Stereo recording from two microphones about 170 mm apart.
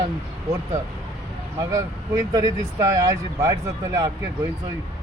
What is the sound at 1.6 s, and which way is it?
Speech, 20° right (ahead or behind).